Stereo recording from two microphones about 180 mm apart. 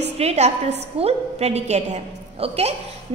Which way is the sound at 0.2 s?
35° right (ahead or behind).